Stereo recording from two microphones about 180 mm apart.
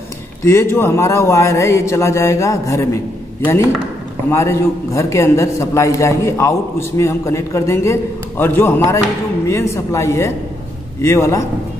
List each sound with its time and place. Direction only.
0.4 s a man's voice: 15° left (ahead or behind)
4.3 s a man's voice: 15° left (ahead or behind)